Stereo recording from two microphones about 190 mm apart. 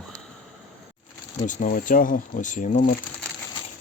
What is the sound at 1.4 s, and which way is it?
Speech, 40° left (ahead or behind).